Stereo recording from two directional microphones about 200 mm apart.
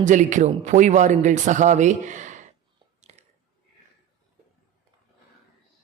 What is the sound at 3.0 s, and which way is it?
Biting, 35° right (ahead or behind).